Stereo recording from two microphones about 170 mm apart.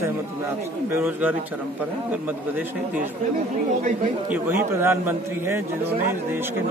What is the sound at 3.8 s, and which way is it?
Speech, 50° right (ahead or behind).